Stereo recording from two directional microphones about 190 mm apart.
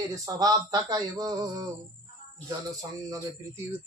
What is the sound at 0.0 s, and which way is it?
Speech, 15° right (ahead or behind).